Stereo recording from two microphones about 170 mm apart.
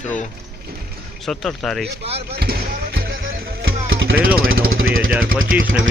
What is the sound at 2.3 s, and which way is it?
Music, 70° right (ahead or behind).